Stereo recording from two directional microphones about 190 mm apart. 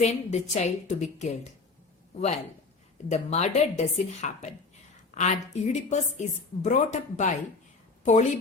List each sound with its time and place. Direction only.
0.0 s a woman's voice: 35° left (ahead or behind)
3.1 s a woman's voice: 35° left (ahead or behind)